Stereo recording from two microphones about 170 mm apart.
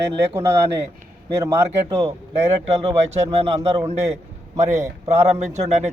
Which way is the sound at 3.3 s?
35° right (ahead or behind).